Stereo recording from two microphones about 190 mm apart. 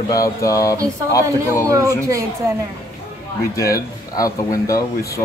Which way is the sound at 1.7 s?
15° right (ahead or behind).